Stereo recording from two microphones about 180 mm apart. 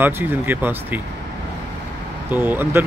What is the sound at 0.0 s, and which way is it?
Speech, 10° right (ahead or behind).